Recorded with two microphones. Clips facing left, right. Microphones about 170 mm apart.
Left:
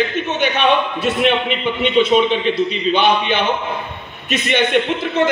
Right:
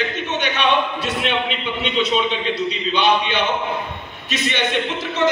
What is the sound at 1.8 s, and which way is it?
A man's voice, 50° left (ahead or behind).